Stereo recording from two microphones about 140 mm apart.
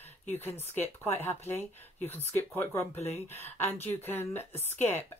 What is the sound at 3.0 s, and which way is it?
Speech, 50° left (ahead or behind).